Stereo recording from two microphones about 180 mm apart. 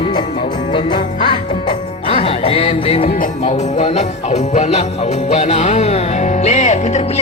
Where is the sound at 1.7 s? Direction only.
30° left (ahead or behind).